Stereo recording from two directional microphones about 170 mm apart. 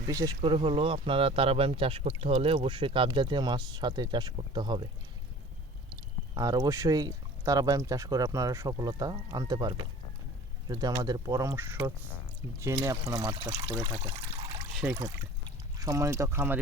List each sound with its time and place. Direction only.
0.1 s speech: 20° right (ahead or behind)
6.3 s speech: 20° right (ahead or behind)